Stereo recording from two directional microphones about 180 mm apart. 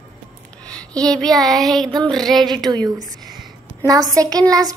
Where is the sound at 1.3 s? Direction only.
20° right (ahead or behind).